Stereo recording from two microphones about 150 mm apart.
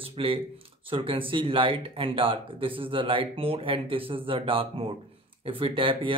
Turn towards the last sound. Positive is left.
turn(degrees=-35)  # may be behind; listen again after turning